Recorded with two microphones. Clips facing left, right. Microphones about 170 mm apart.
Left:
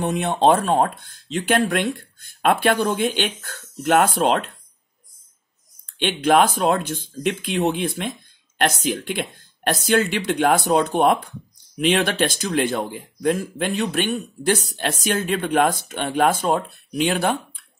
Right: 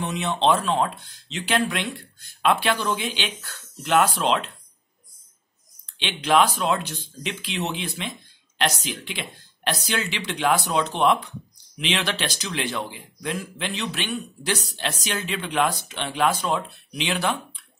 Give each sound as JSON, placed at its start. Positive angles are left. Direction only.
{"t": 0.0, "sound": "speech", "side_deg": 50}
{"t": 5.9, "sound": "speech", "side_deg": 50}